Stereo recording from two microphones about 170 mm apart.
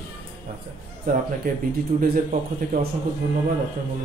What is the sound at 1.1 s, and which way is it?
Speech, 60° right (ahead or behind).